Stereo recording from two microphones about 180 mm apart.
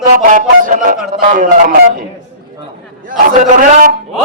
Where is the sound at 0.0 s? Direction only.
50° right (ahead or behind).